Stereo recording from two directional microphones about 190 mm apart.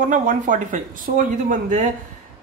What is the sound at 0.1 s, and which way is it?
A woman's voice, 40° right (ahead or behind).